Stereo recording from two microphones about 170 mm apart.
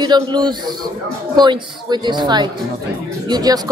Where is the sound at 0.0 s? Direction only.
25° right (ahead or behind).